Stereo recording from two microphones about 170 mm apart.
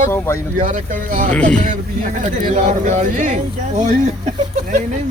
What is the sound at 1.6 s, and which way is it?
Speech, 45° right (ahead or behind).